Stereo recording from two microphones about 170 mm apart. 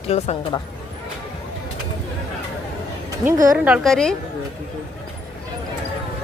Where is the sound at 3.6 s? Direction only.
Centre (ahead or behind).